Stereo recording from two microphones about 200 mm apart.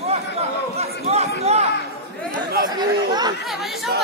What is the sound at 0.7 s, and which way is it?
Speech, 30° right (ahead or behind).